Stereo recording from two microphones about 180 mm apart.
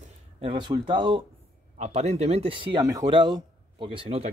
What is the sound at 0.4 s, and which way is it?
Speech, 25° right (ahead or behind).